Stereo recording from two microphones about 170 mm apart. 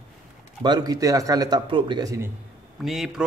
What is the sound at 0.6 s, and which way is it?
Speech, 20° right (ahead or behind).